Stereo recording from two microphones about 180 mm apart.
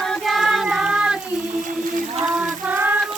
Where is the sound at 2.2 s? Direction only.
5° right (ahead or behind).